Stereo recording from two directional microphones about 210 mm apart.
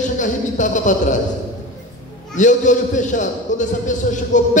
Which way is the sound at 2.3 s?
35° left (ahead or behind).